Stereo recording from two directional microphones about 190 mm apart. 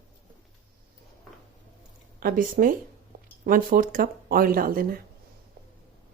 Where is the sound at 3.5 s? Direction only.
50° right (ahead or behind).